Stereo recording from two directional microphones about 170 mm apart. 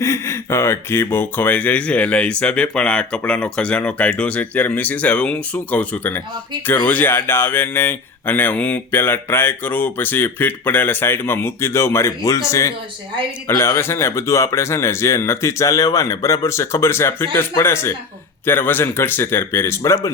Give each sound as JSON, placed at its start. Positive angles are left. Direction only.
{"t": 0.0, "sound": "speech", "side_deg": 15}